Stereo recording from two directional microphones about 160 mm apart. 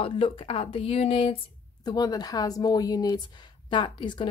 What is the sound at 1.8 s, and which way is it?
Speech, 25° left (ahead or behind).